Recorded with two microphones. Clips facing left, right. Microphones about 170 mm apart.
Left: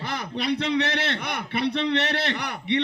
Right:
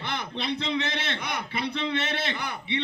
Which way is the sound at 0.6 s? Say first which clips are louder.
Left 5 dB; 65° left (ahead or behind).